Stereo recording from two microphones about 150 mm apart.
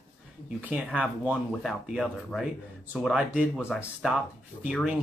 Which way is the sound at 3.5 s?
5° left (ahead or behind).